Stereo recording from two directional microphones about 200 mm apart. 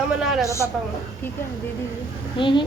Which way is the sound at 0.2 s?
Centre (ahead or behind).